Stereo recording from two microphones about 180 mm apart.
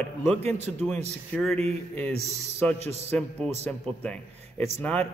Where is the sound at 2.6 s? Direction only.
5° left (ahead or behind).